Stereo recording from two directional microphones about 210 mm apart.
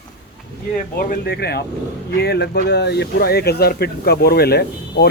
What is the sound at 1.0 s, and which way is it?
Speech, 45° left (ahead or behind).